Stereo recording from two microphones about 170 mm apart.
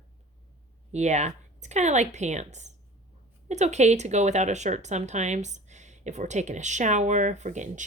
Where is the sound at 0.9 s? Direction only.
40° right (ahead or behind).